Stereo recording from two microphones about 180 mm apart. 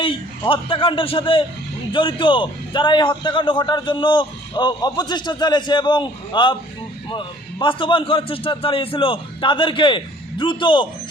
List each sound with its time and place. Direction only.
0.0 s a man's voice: 30° left (ahead or behind)